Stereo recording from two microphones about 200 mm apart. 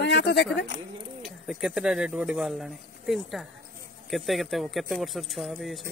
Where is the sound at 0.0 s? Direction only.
60° left (ahead or behind).